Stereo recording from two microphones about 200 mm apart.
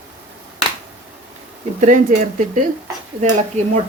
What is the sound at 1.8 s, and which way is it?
Speech, 40° right (ahead or behind).